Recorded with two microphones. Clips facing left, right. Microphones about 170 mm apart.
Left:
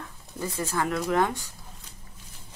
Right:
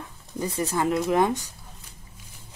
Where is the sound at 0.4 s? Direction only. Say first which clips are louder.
Right 3 dB; 20° right (ahead or behind).